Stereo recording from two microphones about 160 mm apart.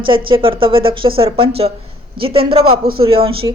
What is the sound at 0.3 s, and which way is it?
A woman's voice, 35° right (ahead or behind).